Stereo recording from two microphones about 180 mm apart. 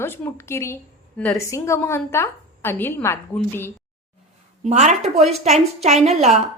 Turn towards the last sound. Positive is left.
turn(degrees=-40)  # may be behind; listen again after turning